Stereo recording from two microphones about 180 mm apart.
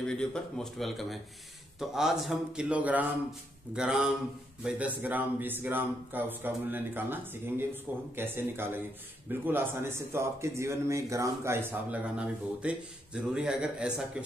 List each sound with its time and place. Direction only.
0.0 s a man's voice: 5° left (ahead or behind)